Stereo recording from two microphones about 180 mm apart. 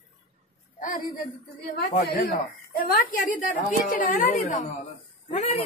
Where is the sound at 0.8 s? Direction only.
50° left (ahead or behind).